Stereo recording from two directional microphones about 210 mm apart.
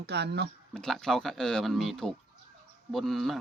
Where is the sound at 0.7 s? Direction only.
Centre (ahead or behind).